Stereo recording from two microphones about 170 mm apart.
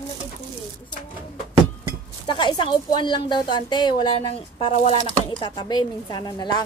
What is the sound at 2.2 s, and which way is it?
Speech, 25° left (ahead or behind).